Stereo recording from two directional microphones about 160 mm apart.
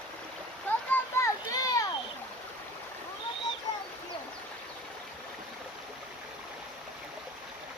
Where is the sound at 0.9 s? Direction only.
15° left (ahead or behind).